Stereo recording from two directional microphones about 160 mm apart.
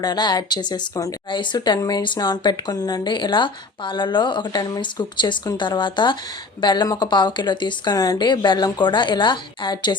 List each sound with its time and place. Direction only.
0.0 s speech: 25° left (ahead or behind)